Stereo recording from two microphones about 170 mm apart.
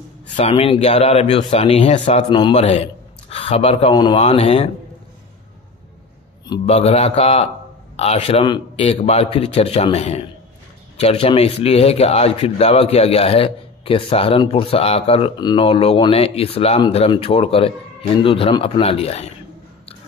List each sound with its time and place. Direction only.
0.3 s a man's voice: 35° left (ahead or behind)
2.2 s a man's voice: 30° left (ahead or behind)
6.6 s a man's voice: 35° left (ahead or behind)